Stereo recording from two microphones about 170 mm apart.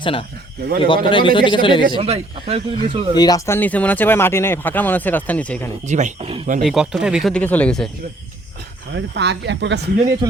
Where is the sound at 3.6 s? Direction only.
10° left (ahead or behind).